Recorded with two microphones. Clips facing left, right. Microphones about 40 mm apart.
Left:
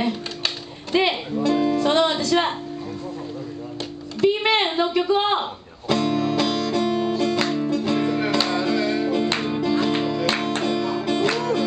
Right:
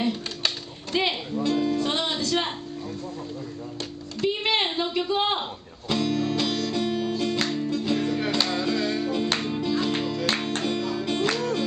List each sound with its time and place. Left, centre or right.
0.9 s speech: centre
4.2 s music: centre